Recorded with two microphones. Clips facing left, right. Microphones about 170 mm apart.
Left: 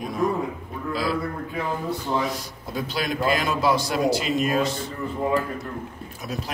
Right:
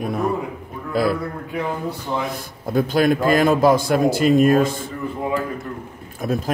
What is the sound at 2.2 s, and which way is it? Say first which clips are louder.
Speech: right 2 dB; 55° right (ahead or behind).